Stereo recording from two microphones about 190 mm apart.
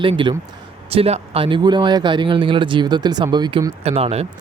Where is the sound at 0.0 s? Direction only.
25° right (ahead or behind).